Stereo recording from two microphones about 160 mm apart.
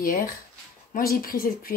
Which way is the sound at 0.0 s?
65° left (ahead or behind).